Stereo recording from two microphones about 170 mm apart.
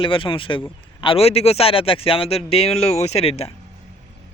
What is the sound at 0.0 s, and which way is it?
Speech, 30° left (ahead or behind).